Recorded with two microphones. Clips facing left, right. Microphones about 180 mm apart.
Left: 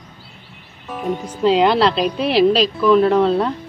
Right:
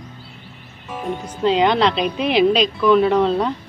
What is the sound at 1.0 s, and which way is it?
A woman's voice, 5° left (ahead or behind).